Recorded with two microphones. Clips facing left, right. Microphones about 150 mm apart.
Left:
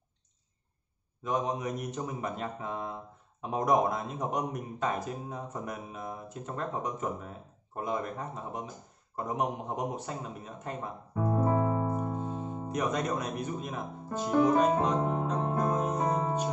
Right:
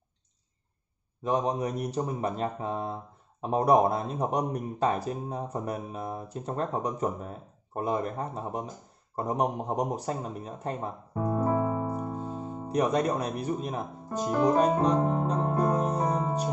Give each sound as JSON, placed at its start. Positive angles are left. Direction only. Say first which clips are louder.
{"t": 1.2, "sound": "speech", "louder": "right 4 dB", "side_deg": -35}
{"t": 11.6, "sound": "music", "louder": "even", "side_deg": -10}
{"t": 12.6, "sound": "speech", "louder": "right 6 dB", "side_deg": -30}